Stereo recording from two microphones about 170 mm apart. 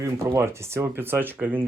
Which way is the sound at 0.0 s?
15° right (ahead or behind).